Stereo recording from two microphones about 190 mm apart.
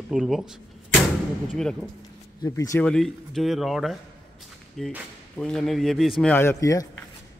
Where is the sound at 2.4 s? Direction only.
15° left (ahead or behind).